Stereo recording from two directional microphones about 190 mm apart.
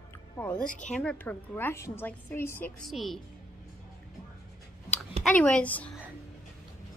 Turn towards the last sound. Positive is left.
turn(degrees=5)  # may be behind; listen again after turning